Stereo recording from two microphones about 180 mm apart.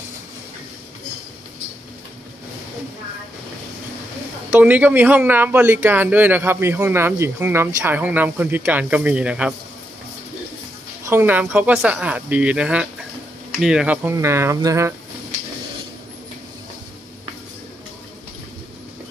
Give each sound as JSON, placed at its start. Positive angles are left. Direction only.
{"t": 4.5, "sound": "speech", "side_deg": -10}
{"t": 11.1, "sound": "speech", "side_deg": -10}